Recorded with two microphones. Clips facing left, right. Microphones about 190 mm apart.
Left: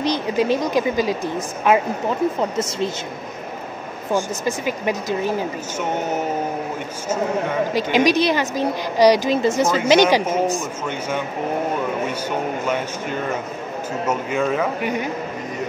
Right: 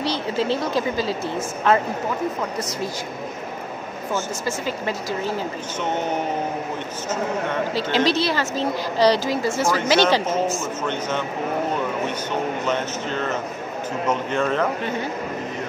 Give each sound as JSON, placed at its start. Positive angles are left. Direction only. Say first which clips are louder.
{"t": 0.0, "sound": "a woman's voice", "louder": "left 3 dB", "side_deg": 15}
{"t": 4.1, "sound": "a woman's voice", "louder": "left 4 dB", "side_deg": 15}
{"t": 7.7, "sound": "a woman's voice", "louder": "left 4 dB", "side_deg": 15}